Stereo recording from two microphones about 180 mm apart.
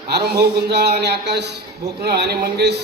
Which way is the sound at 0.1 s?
65° right (ahead or behind).